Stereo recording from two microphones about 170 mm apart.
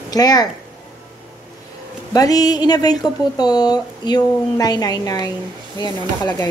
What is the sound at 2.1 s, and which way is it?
Speech, 20° left (ahead or behind).